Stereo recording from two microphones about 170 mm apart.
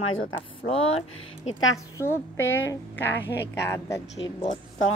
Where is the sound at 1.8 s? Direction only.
15° left (ahead or behind).